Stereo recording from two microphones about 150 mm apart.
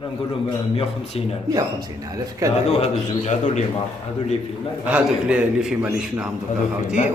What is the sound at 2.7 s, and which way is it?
Speech, 45° left (ahead or behind).